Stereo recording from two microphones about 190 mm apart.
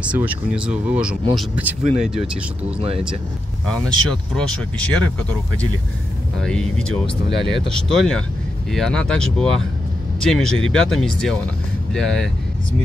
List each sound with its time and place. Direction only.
0.0 s speech: 10° right (ahead or behind)
3.6 s speech: 5° left (ahead or behind)
6.4 s speech: 5° left (ahead or behind)
7.2 s speech: 65° left (ahead or behind)
7.6 s speech: centre (ahead or behind)